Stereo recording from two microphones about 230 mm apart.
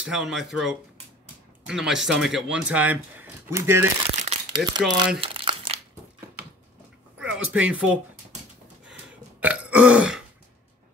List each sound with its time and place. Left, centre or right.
0.0 s speech: centre
4.2 s crumpling: right
7.2 s speech: centre
9.4 s burping: centre